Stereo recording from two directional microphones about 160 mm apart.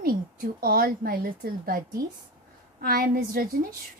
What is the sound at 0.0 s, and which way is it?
A woman's voice, 65° right (ahead or behind).